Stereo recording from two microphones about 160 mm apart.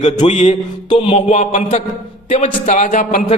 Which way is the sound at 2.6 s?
50° left (ahead or behind).